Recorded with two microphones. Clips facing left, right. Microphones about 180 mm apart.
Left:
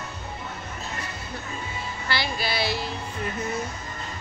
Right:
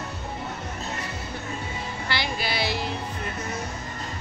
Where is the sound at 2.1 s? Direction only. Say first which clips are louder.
Left 1 dB; 20° right (ahead or behind).